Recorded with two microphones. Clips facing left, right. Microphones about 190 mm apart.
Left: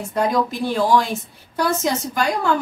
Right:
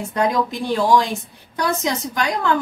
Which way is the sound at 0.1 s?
Centre (ahead or behind).